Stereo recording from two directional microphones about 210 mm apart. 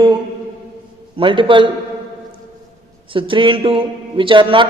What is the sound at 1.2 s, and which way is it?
Speech, 25° right (ahead or behind).